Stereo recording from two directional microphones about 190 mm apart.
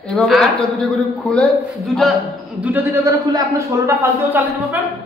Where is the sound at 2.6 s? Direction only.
10° right (ahead or behind).